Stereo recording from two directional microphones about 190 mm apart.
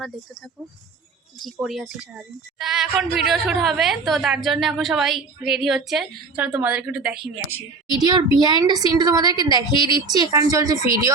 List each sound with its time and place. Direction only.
1.4 s a woman's voice: centre (ahead or behind)
7.9 s a woman's voice: 20° right (ahead or behind)